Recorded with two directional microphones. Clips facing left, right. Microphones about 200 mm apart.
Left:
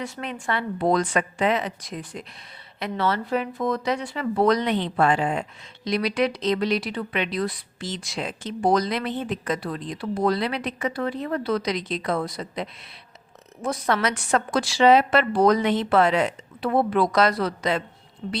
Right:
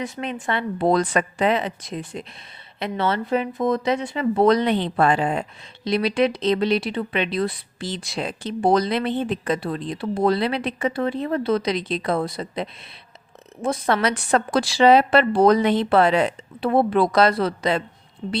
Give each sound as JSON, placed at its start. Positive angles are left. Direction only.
{"t": 0.0, "sound": "a woman's voice", "side_deg": -20}